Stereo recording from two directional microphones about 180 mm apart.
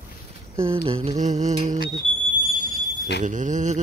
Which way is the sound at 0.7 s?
30° right (ahead or behind).